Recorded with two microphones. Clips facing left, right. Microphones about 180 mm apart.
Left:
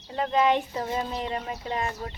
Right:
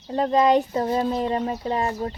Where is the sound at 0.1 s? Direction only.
40° right (ahead or behind).